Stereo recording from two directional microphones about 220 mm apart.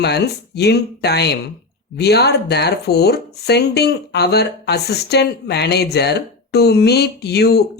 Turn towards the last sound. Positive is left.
turn(degrees=45)  # may be behind; listen again after turning